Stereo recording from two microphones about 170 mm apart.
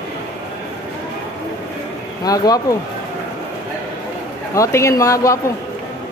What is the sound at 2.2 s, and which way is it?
Speech, 20° left (ahead or behind).